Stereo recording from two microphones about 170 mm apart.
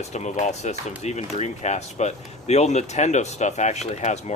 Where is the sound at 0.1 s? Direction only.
45° left (ahead or behind).